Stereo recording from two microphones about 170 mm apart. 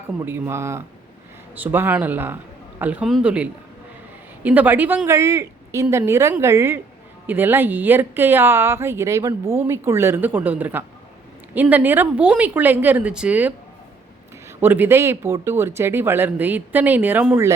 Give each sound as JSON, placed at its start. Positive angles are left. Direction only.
{"t": 0.3, "sound": "speech", "side_deg": -15}
{"t": 14.6, "sound": "speech", "side_deg": -10}